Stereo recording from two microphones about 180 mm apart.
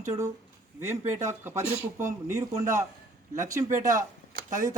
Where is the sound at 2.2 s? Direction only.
15° right (ahead or behind).